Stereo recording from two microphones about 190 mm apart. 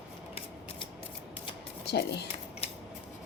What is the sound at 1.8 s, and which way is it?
Speech, 60° left (ahead or behind).